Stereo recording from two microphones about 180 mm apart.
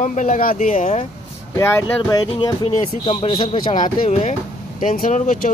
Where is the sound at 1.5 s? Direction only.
15° left (ahead or behind).